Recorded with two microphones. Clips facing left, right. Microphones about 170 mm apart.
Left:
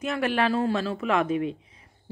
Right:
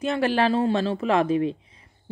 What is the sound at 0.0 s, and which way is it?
Speech, 30° right (ahead or behind).